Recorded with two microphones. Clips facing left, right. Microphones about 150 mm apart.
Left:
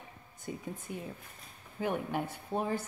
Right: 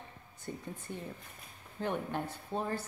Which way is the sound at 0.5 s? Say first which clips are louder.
Left 2 dB; 10° left (ahead or behind).